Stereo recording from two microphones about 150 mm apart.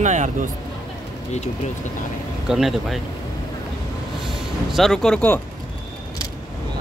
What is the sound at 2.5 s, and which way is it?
Speech, centre (ahead or behind).